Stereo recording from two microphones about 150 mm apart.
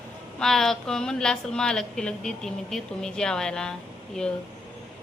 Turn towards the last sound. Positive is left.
turn(degrees=5)  # may be behind; listen again after turning